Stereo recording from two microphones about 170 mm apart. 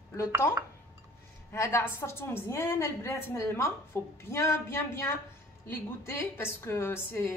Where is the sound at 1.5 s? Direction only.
15° left (ahead or behind).